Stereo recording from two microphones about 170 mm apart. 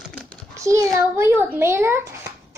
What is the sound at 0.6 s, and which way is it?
A child's voice, 20° right (ahead or behind).